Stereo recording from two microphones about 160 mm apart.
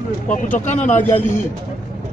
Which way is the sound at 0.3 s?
55° left (ahead or behind).